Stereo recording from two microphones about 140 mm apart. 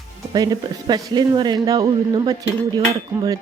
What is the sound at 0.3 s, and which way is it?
Speech, 30° right (ahead or behind).